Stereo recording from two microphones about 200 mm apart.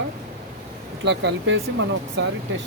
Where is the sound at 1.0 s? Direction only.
60° right (ahead or behind).